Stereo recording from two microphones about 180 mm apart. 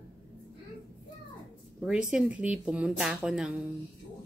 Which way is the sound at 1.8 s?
5° right (ahead or behind).